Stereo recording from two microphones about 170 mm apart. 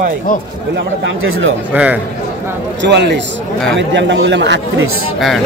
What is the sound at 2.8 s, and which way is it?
A man's voice, 85° right.